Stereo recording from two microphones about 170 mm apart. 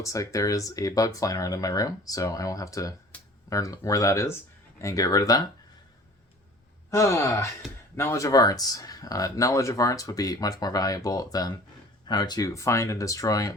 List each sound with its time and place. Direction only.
0.0 s speech: 20° left (ahead or behind)
3.1 s a sound: 10° left (ahead or behind)
3.5 s speech: 20° left (ahead or behind)
6.9 s speech: 15° left (ahead or behind)